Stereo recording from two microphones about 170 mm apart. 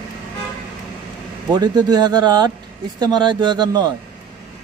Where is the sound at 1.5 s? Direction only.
25° right (ahead or behind).